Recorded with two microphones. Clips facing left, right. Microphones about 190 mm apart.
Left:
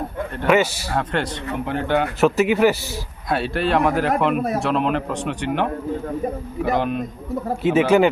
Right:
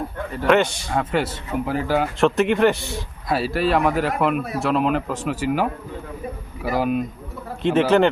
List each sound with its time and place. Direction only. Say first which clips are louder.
0.3 s a man's voice: even; 5° left (ahead or behind)
4.4 s speech: left 4 dB; 45° left (ahead or behind)
4.6 s a man's voice: even; centre (ahead or behind)
6.7 s a man's voice: right 1 dB; 5° right (ahead or behind)
7.6 s speech: left 1 dB; 5° left (ahead or behind)